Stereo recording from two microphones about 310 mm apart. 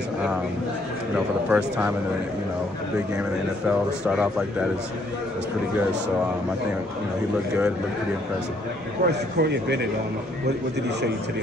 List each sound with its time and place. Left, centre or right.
1.5 s speech: centre
3.6 s speech: centre
9.0 s a man's voice: right